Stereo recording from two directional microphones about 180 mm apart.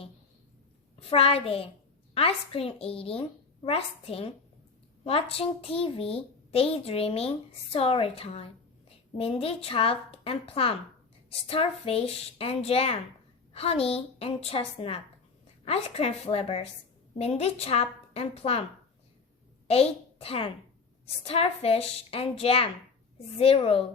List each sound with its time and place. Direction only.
0.9 s a child's voice: 30° left (ahead or behind)
19.6 s a woman's voice: 35° left (ahead or behind)